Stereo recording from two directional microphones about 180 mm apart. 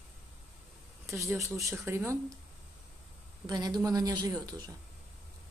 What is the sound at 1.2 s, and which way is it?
Speech, 15° right (ahead or behind).